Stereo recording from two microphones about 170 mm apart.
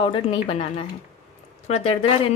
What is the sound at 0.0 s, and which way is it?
A woman's voice, 30° left (ahead or behind).